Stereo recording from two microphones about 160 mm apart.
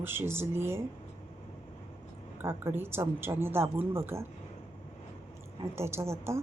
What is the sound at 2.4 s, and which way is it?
A woman's voice, 15° right (ahead or behind).